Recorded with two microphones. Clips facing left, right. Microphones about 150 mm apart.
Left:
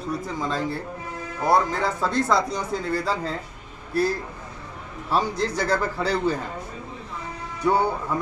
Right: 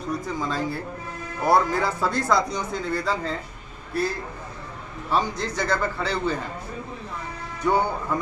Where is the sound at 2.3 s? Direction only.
30° left (ahead or behind).